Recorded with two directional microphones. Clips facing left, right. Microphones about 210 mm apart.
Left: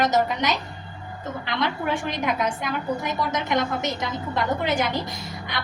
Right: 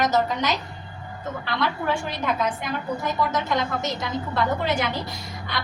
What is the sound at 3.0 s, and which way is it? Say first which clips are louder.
Speech: right 1 dB; 20° left (ahead or behind).